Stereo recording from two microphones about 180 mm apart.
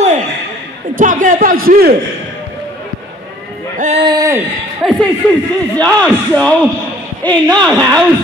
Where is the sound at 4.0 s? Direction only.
20° right (ahead or behind).